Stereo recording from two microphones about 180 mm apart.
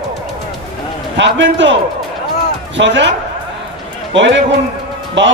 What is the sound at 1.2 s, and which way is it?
A man's voice, 85° right.